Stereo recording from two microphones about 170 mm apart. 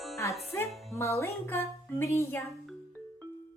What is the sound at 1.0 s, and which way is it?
Speech, 15° left (ahead or behind).